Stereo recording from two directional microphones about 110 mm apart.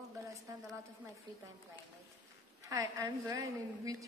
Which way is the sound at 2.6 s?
30° right (ahead or behind).